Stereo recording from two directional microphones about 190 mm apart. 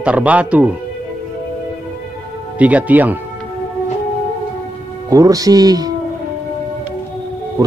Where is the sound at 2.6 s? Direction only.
10° right (ahead or behind).